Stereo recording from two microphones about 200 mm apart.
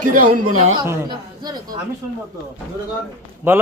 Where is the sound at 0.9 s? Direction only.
20° right (ahead or behind).